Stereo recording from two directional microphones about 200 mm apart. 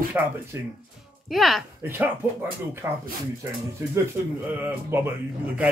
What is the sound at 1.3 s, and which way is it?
Speech, centre (ahead or behind).